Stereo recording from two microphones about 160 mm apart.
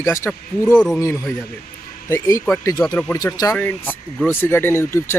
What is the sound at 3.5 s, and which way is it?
Speech, 10° left (ahead or behind).